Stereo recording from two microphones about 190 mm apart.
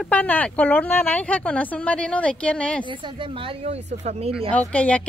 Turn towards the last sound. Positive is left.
turn(degrees=5)  # may be behind; listen again after turning